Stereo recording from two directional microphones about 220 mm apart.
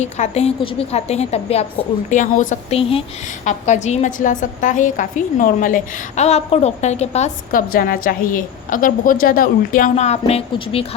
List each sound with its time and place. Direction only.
0.0 s a woman's voice: 30° left (ahead or behind)